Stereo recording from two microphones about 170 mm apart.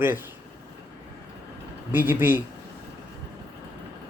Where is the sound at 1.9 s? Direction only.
10° right (ahead or behind).